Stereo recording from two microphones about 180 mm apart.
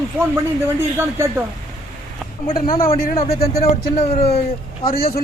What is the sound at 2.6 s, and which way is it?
Speech, 50° left (ahead or behind).